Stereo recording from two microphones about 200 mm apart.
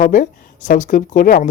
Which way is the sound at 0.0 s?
40° left (ahead or behind).